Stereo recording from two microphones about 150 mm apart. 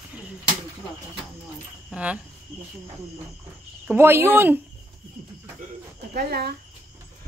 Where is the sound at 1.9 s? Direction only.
10° right (ahead or behind).